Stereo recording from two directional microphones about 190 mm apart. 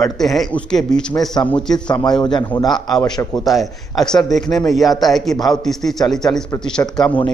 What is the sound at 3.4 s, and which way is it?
A man's voice, centre (ahead or behind).